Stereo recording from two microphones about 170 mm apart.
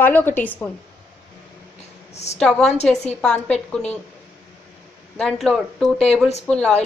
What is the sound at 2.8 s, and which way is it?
Speech, 40° left (ahead or behind).